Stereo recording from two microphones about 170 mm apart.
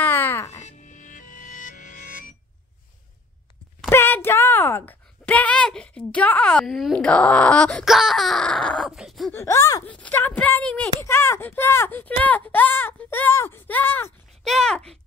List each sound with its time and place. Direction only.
0.0 s music: 10° left (ahead or behind)
0.6 s music: 45° left (ahead or behind)
3.9 s a woman's voice: 15° left (ahead or behind)
9.3 s speech: 15° left (ahead or behind)